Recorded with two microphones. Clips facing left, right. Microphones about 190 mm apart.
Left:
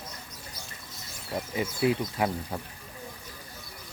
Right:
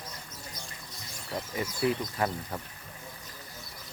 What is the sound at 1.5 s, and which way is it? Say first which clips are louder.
Speech: left 3 dB; 20° left (ahead or behind).